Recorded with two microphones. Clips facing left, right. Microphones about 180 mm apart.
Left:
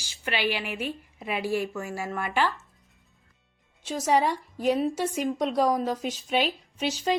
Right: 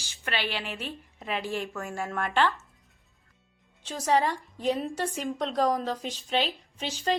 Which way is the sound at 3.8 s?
10° left (ahead or behind).